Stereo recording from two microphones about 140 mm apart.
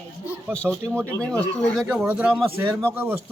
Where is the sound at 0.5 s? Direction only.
5° left (ahead or behind).